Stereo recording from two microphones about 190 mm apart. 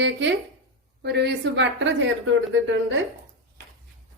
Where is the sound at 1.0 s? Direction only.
60° right (ahead or behind).